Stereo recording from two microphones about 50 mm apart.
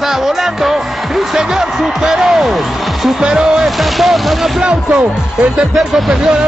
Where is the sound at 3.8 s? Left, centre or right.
Centre.